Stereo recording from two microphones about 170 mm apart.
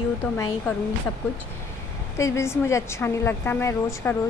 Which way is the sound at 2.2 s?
15° left (ahead or behind).